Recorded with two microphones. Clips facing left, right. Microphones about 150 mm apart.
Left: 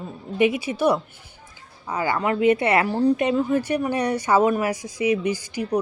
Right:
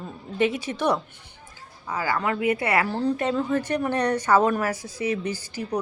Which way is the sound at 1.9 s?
20° left (ahead or behind).